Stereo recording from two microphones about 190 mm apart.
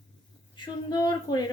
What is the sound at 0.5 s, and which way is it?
Speech, 25° left (ahead or behind).